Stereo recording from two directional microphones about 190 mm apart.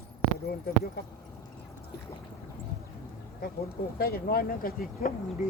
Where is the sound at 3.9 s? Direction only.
55° left (ahead or behind).